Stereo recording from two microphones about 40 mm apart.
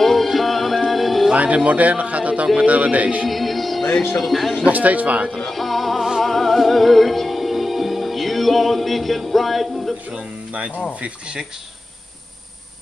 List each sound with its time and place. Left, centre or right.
0.0 s music: centre
1.3 s speech: right
3.3 s music: centre
4.2 s speech: centre
4.6 s speech: right
5.4 s music: centre
10.7 s speech: left
11.0 s speech: right